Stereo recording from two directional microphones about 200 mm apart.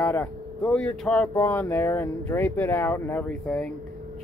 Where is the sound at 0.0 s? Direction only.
10° left (ahead or behind).